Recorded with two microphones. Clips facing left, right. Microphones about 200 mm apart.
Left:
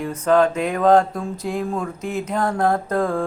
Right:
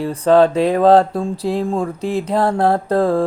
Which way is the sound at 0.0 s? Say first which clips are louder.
Right 5 dB; 35° right (ahead or behind).